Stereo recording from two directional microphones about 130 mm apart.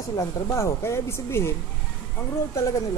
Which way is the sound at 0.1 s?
30° left (ahead or behind).